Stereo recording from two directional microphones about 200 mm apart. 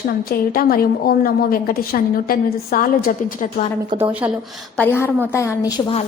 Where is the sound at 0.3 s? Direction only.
45° left (ahead or behind).